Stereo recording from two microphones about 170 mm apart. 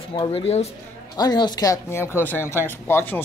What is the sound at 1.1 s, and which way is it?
Speech, 25° left (ahead or behind).